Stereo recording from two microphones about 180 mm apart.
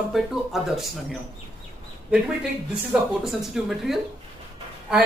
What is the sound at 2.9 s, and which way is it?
A man's voice, centre (ahead or behind).